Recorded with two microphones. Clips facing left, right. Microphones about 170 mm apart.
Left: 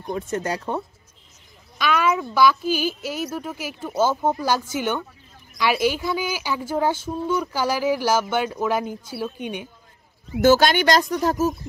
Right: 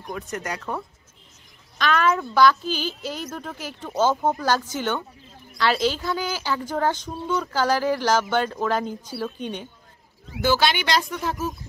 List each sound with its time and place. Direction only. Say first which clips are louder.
0.0 s speech: left 5 dB; 30° left (ahead or behind)
1.8 s a woman's voice: even; 10° left (ahead or behind)
10.4 s speech: left 6 dB; 45° left (ahead or behind)